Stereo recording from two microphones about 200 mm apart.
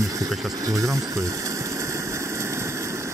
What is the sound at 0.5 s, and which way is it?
Engine, 15° right (ahead or behind).